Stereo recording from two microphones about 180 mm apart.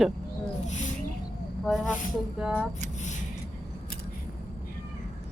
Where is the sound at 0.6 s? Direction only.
40° left (ahead or behind).